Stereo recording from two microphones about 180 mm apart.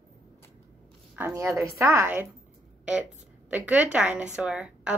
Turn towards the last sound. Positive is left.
turn(degrees=-5)  # may be behind; listen again after turning